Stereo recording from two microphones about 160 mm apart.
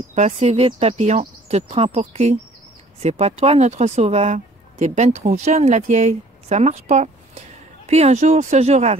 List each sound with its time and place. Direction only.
0.1 s speech: 45° right (ahead or behind)